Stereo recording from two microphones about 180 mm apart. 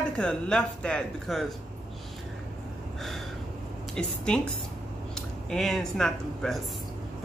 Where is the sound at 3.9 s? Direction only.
5° left (ahead or behind).